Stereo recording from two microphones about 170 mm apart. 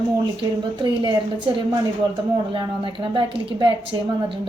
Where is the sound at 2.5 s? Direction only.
30° right (ahead or behind).